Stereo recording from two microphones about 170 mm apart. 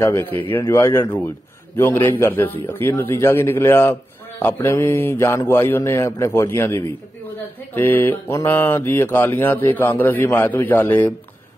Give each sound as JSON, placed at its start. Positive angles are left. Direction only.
{"t": 0.0, "sound": "speech", "side_deg": 15}